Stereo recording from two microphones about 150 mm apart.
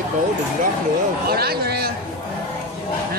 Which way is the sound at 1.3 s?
90° right.